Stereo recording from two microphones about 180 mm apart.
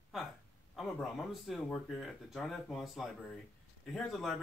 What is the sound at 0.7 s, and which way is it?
Speech, centre (ahead or behind).